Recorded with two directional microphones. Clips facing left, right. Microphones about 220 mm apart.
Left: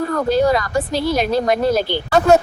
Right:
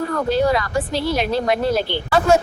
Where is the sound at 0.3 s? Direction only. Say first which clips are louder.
Left 2 dB; 45° left (ahead or behind).